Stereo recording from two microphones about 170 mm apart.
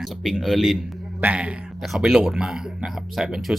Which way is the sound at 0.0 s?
Centre (ahead or behind).